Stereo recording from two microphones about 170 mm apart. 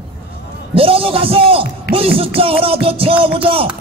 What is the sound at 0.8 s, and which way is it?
A man's voice, 35° right (ahead or behind).